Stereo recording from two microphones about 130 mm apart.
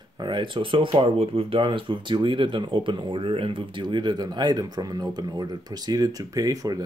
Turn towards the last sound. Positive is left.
turn(degrees=-30)  # may be behind; listen again after turning